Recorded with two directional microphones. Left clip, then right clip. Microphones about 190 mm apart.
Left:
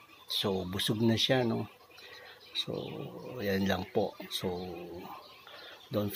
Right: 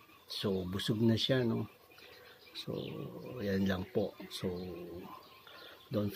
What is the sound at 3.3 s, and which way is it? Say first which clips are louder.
Speech: left 4 dB; 20° right (ahead or behind).